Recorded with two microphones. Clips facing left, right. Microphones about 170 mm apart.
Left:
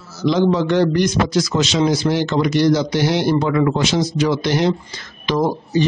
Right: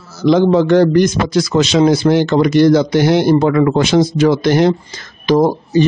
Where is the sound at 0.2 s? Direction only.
55° right (ahead or behind).